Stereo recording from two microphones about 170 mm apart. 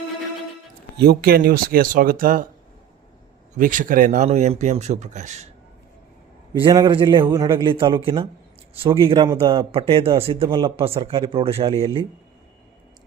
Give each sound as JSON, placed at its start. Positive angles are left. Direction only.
{"t": 0.9, "sound": "speech", "side_deg": -65}
{"t": 3.6, "sound": "speech", "side_deg": -50}
{"t": 6.5, "sound": "speech", "side_deg": -25}